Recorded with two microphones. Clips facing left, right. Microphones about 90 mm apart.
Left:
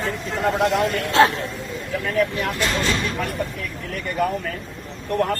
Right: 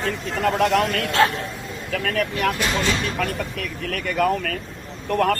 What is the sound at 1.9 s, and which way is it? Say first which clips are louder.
Speech: left 2 dB; 85° right.